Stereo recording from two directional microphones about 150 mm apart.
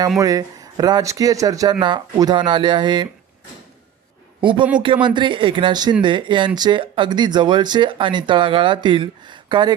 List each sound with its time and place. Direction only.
0.2 s speech: 25° right (ahead or behind)
4.4 s a man's voice: 35° right (ahead or behind)